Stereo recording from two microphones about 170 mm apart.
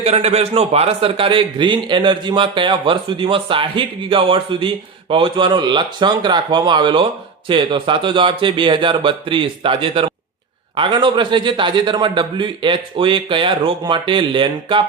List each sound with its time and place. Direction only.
0.0 s a man's voice: 40° right (ahead or behind)